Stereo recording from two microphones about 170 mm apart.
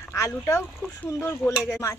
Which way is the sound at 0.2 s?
15° left (ahead or behind).